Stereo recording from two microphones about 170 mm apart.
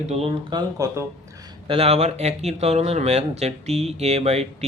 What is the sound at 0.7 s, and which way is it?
Speech, 15° right (ahead or behind).